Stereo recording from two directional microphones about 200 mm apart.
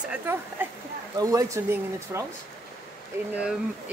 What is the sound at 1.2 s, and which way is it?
Speech, 15° right (ahead or behind).